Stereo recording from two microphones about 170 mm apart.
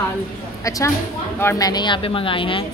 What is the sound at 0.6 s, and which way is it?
A woman's voice, 20° left (ahead or behind).